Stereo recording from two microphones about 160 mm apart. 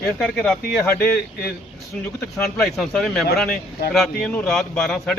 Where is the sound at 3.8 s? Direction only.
75° left (ahead or behind).